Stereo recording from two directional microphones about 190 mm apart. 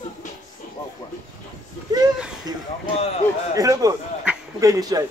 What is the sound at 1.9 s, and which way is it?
Speech, 20° right (ahead or behind).